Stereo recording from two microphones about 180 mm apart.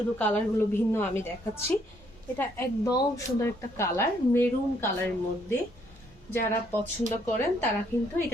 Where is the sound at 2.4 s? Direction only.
15° left (ahead or behind).